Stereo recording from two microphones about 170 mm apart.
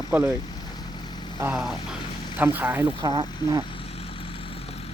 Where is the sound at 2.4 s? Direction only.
10° right (ahead or behind).